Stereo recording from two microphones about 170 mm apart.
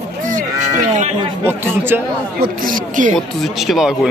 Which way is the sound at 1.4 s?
15° right (ahead or behind).